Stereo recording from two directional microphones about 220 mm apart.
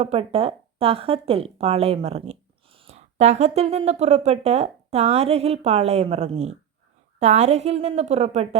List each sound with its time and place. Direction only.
0.0 s speech: 25° right (ahead or behind)